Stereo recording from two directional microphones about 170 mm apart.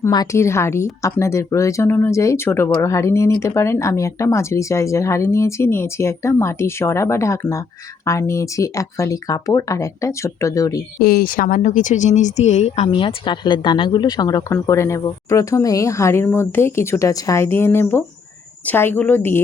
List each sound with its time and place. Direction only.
0.0 s speech: 20° left (ahead or behind)
11.0 s speech: 60° left (ahead or behind); by 19.4 s 10° left (ahead or behind)